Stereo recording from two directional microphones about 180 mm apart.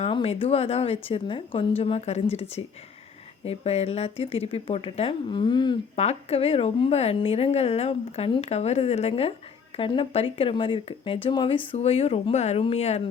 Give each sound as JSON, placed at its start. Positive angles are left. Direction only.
{"t": 0.0, "sound": "a woman's voice", "side_deg": 30}
{"t": 6.0, "sound": "a woman's voice", "side_deg": 35}